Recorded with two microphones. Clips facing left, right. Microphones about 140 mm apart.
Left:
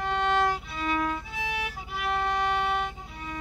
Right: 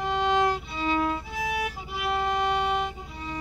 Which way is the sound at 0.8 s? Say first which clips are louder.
Right 3 dB; 30° right (ahead or behind).